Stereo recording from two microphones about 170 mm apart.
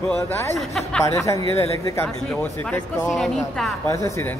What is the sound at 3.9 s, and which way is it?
Speech, 15° left (ahead or behind).